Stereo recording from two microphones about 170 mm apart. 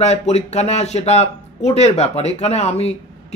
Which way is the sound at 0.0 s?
40° left (ahead or behind).